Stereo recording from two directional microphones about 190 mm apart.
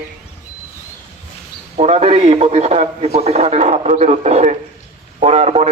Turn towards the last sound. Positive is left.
turn(degrees=-35)  # may be behind; listen again after turning